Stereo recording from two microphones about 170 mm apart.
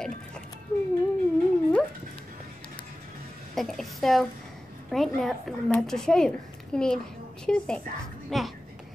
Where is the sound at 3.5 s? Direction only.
Centre (ahead or behind).